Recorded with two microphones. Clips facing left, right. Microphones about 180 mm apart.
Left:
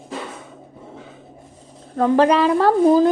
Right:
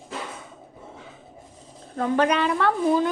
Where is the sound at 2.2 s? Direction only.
35° left (ahead or behind).